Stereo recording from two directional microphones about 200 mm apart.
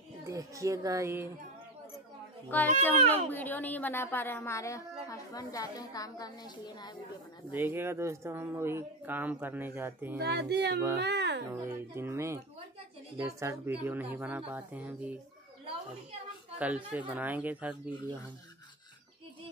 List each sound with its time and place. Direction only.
0.3 s speech: 15° right (ahead or behind)
2.8 s a woman's voice: 10° left (ahead or behind)
7.5 s speech: 10° right (ahead or behind)
10.1 s speech: 55° right (ahead or behind)
11.9 s speech: 10° right (ahead or behind)
16.5 s speech: 5° right (ahead or behind)